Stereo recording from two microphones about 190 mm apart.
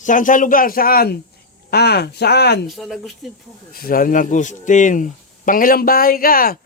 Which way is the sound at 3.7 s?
50° left (ahead or behind).